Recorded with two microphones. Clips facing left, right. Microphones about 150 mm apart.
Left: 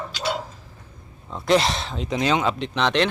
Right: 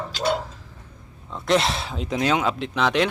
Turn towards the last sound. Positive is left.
turn(degrees=-5)  # may be behind; listen again after turning